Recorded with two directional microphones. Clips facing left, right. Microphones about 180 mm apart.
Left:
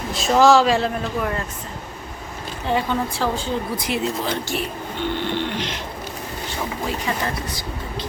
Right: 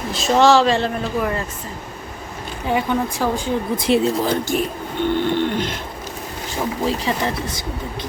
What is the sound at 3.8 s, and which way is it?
Speech, 30° right (ahead or behind).